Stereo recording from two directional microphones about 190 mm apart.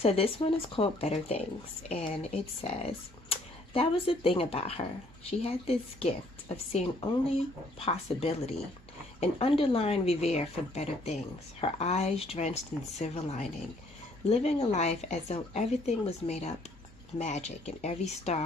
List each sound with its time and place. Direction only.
0.0 s a woman's voice: 30° left (ahead or behind)